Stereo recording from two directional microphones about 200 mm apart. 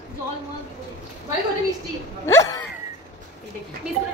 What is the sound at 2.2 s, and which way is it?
Speech, 15° left (ahead or behind).